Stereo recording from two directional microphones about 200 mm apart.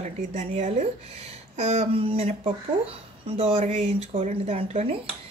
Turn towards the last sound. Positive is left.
turn(degrees=-30)  # may be behind; listen again after turning